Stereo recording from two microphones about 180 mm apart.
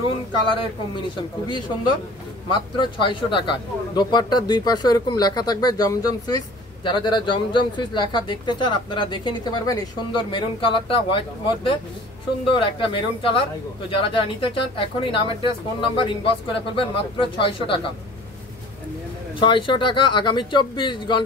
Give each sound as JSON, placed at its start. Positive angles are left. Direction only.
{"t": 2.5, "sound": "speech", "side_deg": 25}
{"t": 19.4, "sound": "speech", "side_deg": 25}